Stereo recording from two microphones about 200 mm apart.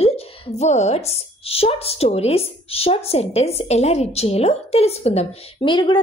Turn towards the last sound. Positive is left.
turn(degrees=25)  # may be behind; listen again after turning